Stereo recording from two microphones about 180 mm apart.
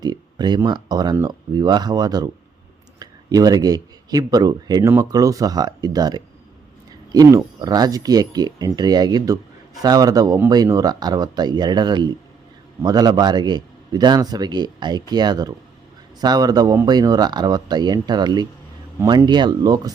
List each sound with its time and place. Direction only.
0.0 s speech: 25° right (ahead or behind)